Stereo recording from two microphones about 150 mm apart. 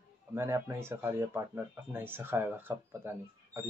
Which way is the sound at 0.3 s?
20° right (ahead or behind).